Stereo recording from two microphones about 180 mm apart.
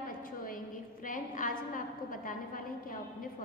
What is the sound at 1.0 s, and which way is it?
A woman's voice, 50° left (ahead or behind).